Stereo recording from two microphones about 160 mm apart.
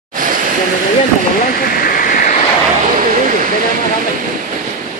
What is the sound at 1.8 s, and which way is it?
Waterfall, 65° left (ahead or behind).